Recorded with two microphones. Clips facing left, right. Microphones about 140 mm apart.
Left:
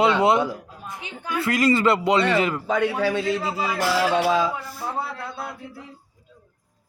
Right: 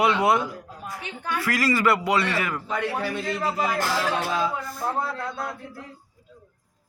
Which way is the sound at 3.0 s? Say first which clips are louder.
Left 4 dB; 90° left.